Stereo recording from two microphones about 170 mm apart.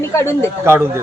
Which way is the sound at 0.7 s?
15° right (ahead or behind).